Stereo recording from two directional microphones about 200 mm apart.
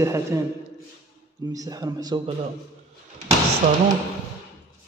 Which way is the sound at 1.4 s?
20° right (ahead or behind).